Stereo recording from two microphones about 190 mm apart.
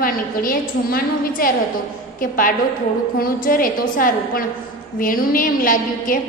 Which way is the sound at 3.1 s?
50° left (ahead or behind).